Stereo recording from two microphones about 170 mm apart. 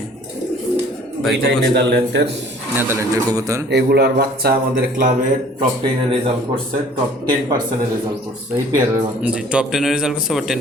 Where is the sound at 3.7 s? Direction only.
75° right (ahead or behind).